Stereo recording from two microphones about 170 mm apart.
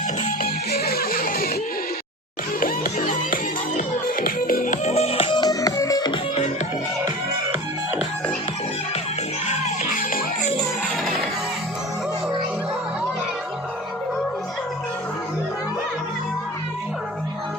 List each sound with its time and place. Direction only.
0.4 s music: 65° left (ahead or behind)
2.6 s music: 55° left (ahead or behind); by 6.4 s 25° left (ahead or behind)
9.5 s music: 55° left (ahead or behind)
11.0 s music: centre (ahead or behind)